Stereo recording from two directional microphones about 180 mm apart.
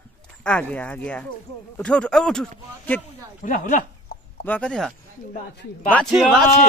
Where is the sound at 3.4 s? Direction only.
50° left (ahead or behind).